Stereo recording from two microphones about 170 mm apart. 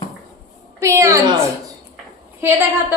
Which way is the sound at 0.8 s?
20° right (ahead or behind).